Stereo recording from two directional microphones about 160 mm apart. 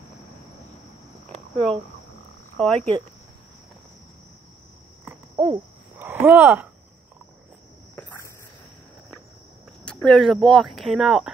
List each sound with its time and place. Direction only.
2.6 s speech: 5° left (ahead or behind)
5.3 s a sound: 30° right (ahead or behind)
5.9 s speech: 15° right (ahead or behind)
7.9 s cricket: 15° left (ahead or behind)
9.8 s speech: 5° left (ahead or behind)